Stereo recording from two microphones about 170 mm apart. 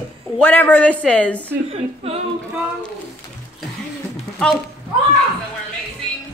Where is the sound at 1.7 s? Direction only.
35° right (ahead or behind).